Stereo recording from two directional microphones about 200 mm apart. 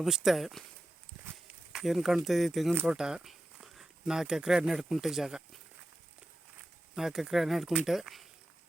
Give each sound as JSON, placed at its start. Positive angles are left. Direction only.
{"t": 0.0, "sound": "speech", "side_deg": 0}
{"t": 1.7, "sound": "speech", "side_deg": 0}
{"t": 6.9, "sound": "speech", "side_deg": 0}